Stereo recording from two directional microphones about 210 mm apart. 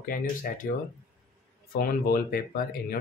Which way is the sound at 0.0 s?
40° left (ahead or behind).